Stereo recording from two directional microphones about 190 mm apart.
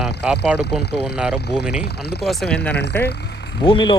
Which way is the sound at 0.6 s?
60° left (ahead or behind).